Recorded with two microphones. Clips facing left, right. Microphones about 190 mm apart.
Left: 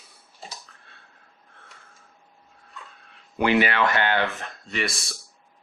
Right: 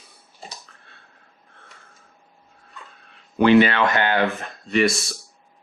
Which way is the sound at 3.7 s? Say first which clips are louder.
Right 2 dB; 20° right (ahead or behind).